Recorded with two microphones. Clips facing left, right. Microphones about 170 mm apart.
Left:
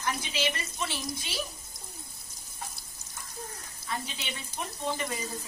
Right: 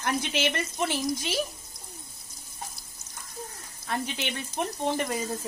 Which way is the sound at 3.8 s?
60° right (ahead or behind).